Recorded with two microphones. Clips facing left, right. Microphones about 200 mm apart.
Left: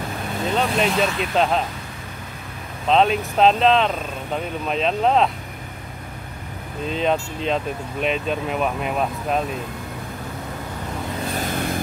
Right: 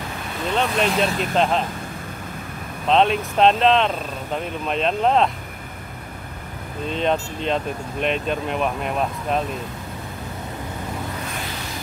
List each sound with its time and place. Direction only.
0.6 s speech: centre (ahead or behind)
2.9 s speech: centre (ahead or behind)
6.9 s speech: centre (ahead or behind)
11.4 s a sound: 55° left (ahead or behind)